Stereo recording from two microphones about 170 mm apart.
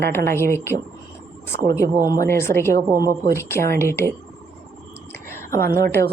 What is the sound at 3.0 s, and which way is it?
Speech, 60° right (ahead or behind).